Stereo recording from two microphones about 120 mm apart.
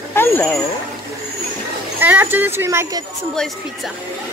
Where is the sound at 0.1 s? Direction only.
15° left (ahead or behind).